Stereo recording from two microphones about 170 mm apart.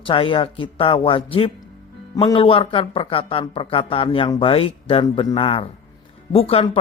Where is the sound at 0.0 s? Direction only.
30° left (ahead or behind).